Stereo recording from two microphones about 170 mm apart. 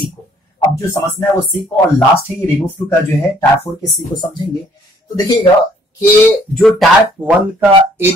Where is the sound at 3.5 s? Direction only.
20° left (ahead or behind).